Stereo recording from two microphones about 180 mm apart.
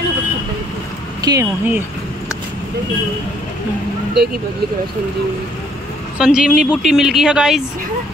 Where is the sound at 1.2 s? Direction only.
20° right (ahead or behind).